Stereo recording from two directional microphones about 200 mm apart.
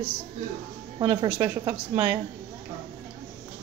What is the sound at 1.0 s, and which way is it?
A woman's voice, 25° right (ahead or behind).